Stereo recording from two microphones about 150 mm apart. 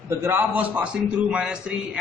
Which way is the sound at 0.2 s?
15° right (ahead or behind).